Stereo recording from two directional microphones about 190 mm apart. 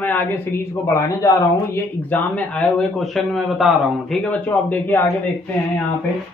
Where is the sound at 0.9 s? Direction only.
15° left (ahead or behind).